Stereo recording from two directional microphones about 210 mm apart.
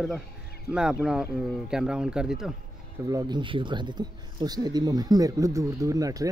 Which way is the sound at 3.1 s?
20° right (ahead or behind).